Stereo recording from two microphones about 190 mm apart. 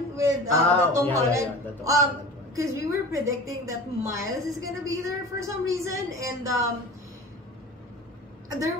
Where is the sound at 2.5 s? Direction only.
15° right (ahead or behind).